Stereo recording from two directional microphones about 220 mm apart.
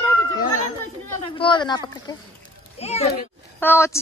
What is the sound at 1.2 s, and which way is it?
A child's voice, 25° left (ahead or behind).